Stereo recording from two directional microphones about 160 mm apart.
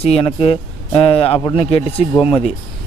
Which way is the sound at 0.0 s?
40° left (ahead or behind).